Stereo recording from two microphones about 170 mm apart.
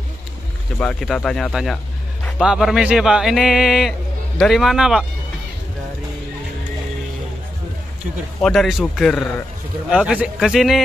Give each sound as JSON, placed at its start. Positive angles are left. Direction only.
{"t": 0.7, "sound": "speech", "side_deg": 5}
{"t": 8.4, "sound": "speech", "side_deg": 0}